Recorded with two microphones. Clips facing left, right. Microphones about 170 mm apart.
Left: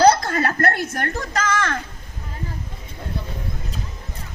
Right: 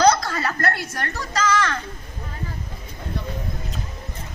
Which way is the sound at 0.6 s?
50° left (ahead or behind).